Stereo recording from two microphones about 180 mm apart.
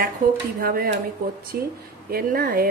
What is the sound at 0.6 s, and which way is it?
Speech, 55° right (ahead or behind).